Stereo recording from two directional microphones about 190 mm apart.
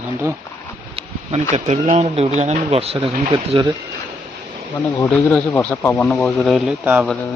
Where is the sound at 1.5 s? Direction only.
40° right (ahead or behind).